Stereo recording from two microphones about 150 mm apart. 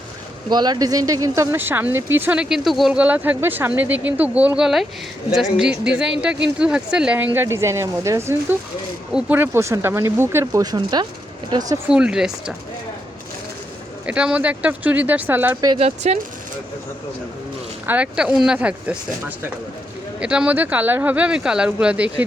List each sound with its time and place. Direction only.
0.5 s speech: 30° right (ahead or behind); by 7.3 s 5° right (ahead or behind)
7.3 s speech: 20° right (ahead or behind)
11.9 s speech: 5° right (ahead or behind)
14.1 s speech: 10° right (ahead or behind)
16.0 s speech: 50° right (ahead or behind)
17.8 s speech: 10° right (ahead or behind)
20.1 s speech: 5° right (ahead or behind)